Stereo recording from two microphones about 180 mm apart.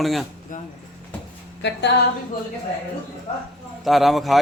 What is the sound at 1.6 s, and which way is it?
Speech, 75° left (ahead or behind).